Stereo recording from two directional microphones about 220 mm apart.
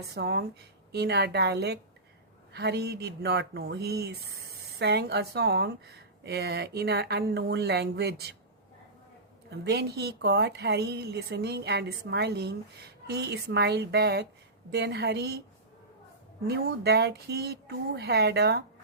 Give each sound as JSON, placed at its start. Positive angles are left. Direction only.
{"t": 0.1, "sound": "a woman's voice", "side_deg": -45}
{"t": 9.5, "sound": "a woman's voice", "side_deg": -50}
{"t": 16.5, "sound": "a woman's voice", "side_deg": -50}